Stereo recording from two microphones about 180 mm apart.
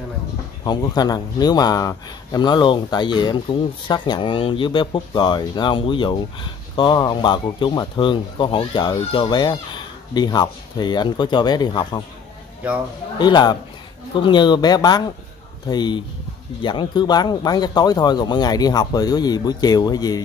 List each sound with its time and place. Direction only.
0.7 s speech: 20° left (ahead or behind)
13.2 s speech: 25° left (ahead or behind)